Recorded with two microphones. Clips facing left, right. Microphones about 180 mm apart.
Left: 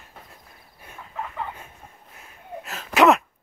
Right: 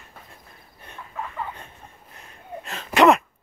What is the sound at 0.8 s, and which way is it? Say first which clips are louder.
Cricket: right 1 dB; 10° left (ahead or behind).